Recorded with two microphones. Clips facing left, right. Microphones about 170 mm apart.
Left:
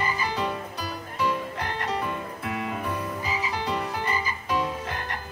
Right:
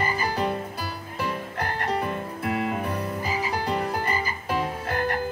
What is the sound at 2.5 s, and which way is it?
Croak, 45° right (ahead or behind).